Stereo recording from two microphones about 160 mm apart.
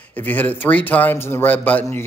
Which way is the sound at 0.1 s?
10° left (ahead or behind).